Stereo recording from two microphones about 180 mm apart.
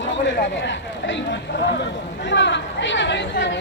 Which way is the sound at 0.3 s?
85° left.